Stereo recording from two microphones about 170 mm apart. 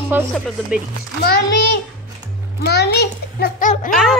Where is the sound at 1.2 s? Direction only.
65° left (ahead or behind).